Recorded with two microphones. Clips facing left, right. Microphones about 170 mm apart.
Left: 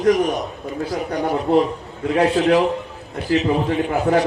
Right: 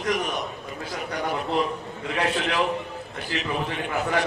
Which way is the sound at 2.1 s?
35° left (ahead or behind).